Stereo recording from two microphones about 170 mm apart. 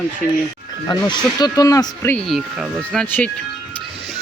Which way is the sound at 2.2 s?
Centre (ahead or behind).